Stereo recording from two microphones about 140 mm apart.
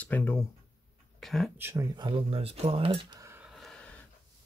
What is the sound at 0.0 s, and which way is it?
Speech, 15° left (ahead or behind).